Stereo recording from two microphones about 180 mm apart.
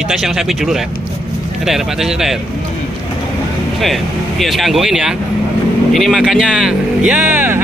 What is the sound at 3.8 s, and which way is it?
Speech, centre (ahead or behind).